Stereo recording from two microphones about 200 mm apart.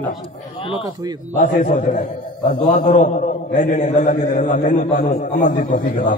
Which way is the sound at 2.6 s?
40° left (ahead or behind).